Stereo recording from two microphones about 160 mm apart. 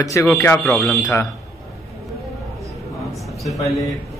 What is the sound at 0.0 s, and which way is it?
A man's voice, 20° left (ahead or behind).